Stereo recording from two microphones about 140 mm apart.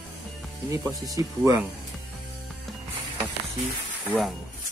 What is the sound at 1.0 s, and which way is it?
Speech, 25° right (ahead or behind).